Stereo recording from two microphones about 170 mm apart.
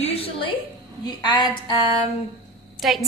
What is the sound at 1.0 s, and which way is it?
Speech, 25° left (ahead or behind).